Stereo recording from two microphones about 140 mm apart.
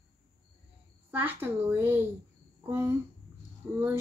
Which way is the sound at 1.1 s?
15° right (ahead or behind).